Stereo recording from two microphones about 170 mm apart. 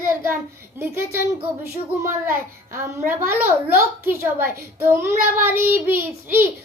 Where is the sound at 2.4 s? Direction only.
15° right (ahead or behind).